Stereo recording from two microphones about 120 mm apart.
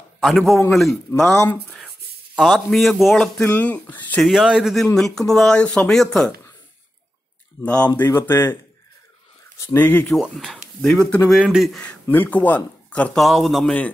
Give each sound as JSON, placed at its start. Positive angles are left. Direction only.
{"t": 0.2, "sound": "speech", "side_deg": 0}
{"t": 2.3, "sound": "speech", "side_deg": 0}
{"t": 4.2, "sound": "speech", "side_deg": -5}
{"t": 7.6, "sound": "a man's voice", "side_deg": 10}
{"t": 9.8, "sound": "speech", "side_deg": 15}
{"t": 10.0, "sound": "speech", "side_deg": 0}
{"t": 13.2, "sound": "speech", "side_deg": 0}